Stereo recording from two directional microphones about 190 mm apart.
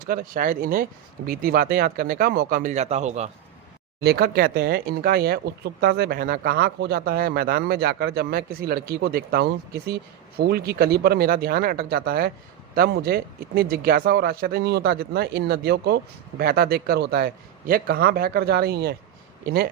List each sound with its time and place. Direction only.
0.0 s speech: 50° right (ahead or behind)
4.0 s speech: 55° right (ahead or behind)